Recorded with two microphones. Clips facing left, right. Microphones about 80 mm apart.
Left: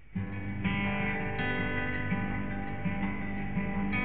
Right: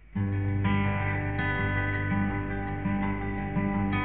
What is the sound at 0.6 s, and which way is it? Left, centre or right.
Music, right.